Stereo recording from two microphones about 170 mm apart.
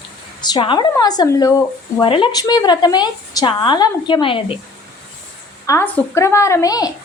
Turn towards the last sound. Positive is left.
turn(degrees=20)  # may be behind; listen again after turning